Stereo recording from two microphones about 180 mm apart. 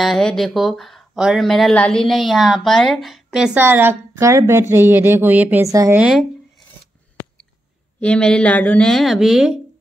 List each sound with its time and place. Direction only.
0.0 s speech: centre (ahead or behind); by 6.0 s 15° right (ahead or behind)
8.0 s speech: 5° left (ahead or behind)